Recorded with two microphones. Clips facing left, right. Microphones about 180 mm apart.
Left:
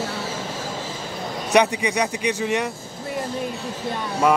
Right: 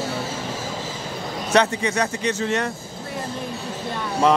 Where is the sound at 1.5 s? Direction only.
15° left (ahead or behind).